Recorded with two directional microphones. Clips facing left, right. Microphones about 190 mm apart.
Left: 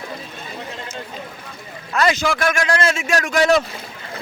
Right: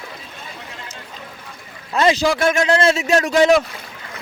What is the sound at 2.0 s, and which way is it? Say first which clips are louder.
Speech: right 3 dB; 25° right (ahead or behind).